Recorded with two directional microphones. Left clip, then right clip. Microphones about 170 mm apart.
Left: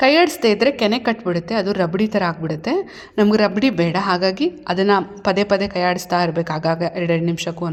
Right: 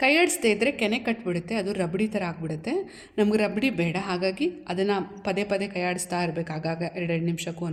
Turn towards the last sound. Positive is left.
turn(degrees=30)  # may be behind; listen again after turning